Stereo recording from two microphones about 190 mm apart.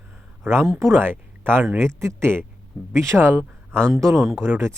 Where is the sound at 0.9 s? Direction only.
10° right (ahead or behind).